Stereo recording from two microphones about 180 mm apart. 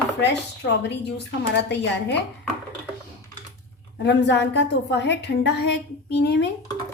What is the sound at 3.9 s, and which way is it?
A woman's voice, 75° left (ahead or behind).